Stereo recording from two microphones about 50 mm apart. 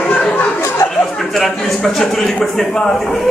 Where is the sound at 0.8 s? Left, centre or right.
Centre.